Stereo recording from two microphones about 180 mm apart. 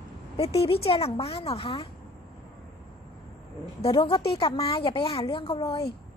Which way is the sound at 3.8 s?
30° left (ahead or behind).